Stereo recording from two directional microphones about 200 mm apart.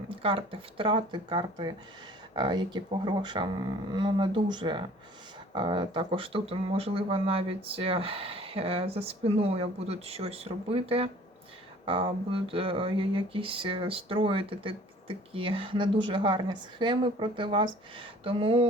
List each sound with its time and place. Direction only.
0.1 s speech: 25° right (ahead or behind)